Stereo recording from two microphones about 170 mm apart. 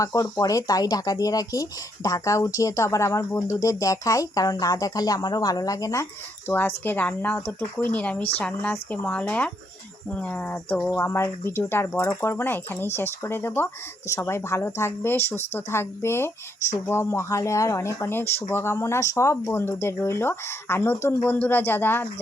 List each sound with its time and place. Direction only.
0.0 s speech: 20° left (ahead or behind)